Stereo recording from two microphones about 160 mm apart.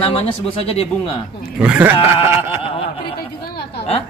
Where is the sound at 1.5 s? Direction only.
5° right (ahead or behind).